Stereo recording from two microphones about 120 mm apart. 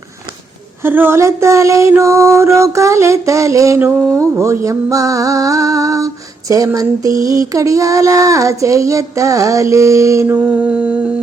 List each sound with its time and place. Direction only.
0.8 s female singing: 20° right (ahead or behind)